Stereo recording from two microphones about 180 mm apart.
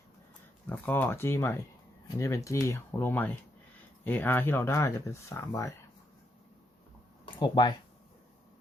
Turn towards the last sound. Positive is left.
turn(degrees=25)  # may be behind; listen again after turning